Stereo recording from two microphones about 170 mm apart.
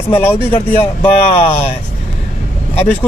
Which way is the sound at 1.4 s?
40° left (ahead or behind).